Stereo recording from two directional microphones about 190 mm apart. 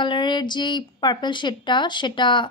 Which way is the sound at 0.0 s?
25° left (ahead or behind).